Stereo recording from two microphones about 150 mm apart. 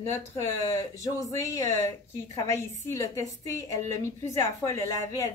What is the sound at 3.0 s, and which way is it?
A woman's voice, 20° left (ahead or behind).